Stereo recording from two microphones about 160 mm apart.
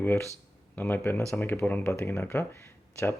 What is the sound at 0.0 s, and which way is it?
Speech, 15° left (ahead or behind).